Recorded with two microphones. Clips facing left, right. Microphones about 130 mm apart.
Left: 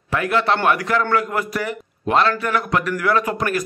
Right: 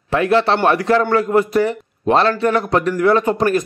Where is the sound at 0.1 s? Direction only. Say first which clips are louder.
Right 4 dB; 25° right (ahead or behind).